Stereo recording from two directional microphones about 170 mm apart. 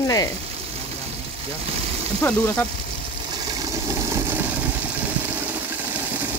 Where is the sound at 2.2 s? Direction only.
10° left (ahead or behind).